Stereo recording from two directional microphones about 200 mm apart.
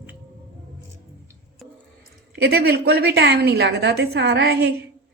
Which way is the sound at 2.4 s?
55° right (ahead or behind).